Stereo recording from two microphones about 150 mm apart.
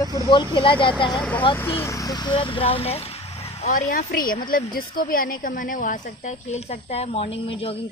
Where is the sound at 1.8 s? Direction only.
20° left (ahead or behind); by 3.7 s 40° left (ahead or behind).